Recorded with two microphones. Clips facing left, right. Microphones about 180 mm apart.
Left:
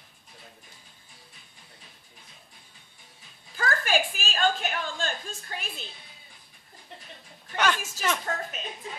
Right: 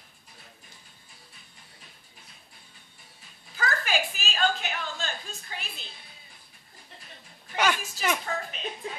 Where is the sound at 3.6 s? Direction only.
50° left (ahead or behind).